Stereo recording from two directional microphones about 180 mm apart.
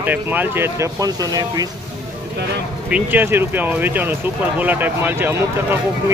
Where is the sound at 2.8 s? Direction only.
10° right (ahead or behind).